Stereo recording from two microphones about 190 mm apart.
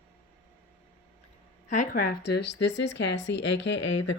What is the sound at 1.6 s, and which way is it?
A woman's voice, 40° left (ahead or behind).